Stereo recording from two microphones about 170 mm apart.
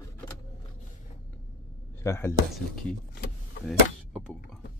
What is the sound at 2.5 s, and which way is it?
Speech, 5° left (ahead or behind).